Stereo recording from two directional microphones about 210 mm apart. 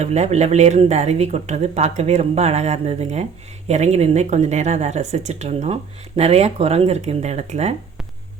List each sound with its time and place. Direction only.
0.0 s speech: 30° right (ahead or behind)